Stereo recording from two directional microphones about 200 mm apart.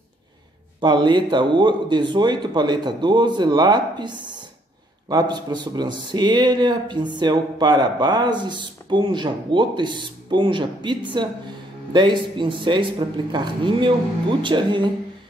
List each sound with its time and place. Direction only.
0.7 s a man's voice: 20° right (ahead or behind)
5.1 s a man's voice: 20° right (ahead or behind)